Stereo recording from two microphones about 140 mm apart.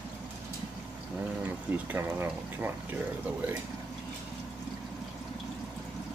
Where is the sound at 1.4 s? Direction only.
15° right (ahead or behind).